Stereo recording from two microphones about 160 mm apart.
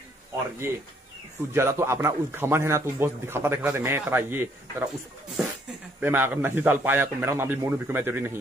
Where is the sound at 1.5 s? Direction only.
15° right (ahead or behind).